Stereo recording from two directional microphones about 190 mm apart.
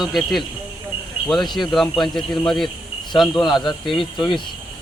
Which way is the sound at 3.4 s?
25° left (ahead or behind).